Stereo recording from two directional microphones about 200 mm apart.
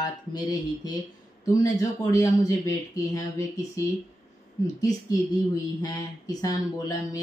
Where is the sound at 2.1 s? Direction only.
15° left (ahead or behind).